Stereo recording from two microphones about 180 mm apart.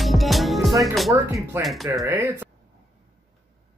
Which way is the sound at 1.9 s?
15° right (ahead or behind).